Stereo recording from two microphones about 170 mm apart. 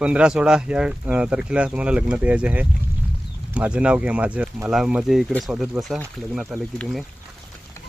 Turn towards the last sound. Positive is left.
turn(degrees=0)  # may be behind; listen again after turning